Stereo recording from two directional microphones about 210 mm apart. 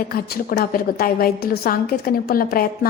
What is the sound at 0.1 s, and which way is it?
A woman's voice, 45° left (ahead or behind).